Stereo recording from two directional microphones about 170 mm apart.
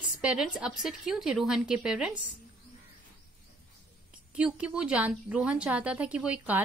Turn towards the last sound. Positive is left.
turn(degrees=-10)  # may be behind; listen again after turning